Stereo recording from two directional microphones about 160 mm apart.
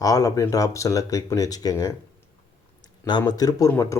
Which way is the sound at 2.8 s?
25° left (ahead or behind).